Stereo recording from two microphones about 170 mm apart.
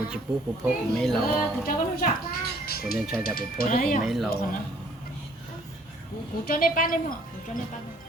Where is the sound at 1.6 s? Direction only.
60° left (ahead or behind).